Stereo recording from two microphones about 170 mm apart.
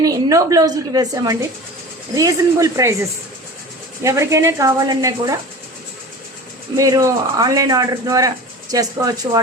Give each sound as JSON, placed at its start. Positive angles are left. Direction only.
{"t": 0.0, "sound": "speech", "side_deg": -20}
{"t": 6.7, "sound": "speech", "side_deg": -20}